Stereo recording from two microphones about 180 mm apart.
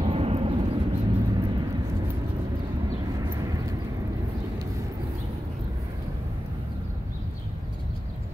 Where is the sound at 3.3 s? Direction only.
20° right (ahead or behind).